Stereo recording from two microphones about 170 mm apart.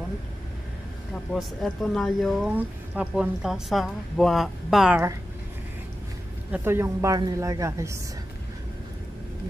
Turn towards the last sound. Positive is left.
turn(degrees=-15)  # may be behind; listen again after turning